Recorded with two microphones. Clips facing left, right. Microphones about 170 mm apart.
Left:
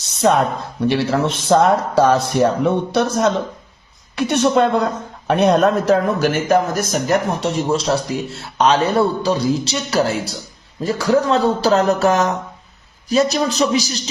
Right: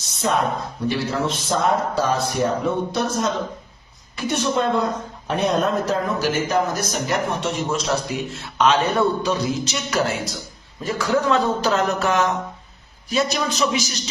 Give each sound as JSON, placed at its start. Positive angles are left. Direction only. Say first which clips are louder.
{"t": 0.9, "sound": "speech", "louder": "left 5 dB", "side_deg": 70}
{"t": 4.1, "sound": "speech", "louder": "left 6 dB", "side_deg": 65}
{"t": 7.3, "sound": "a man's voice", "louder": "left 5 dB", "side_deg": 35}